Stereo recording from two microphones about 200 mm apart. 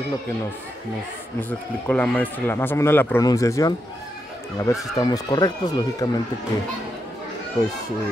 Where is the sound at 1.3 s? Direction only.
10° left (ahead or behind).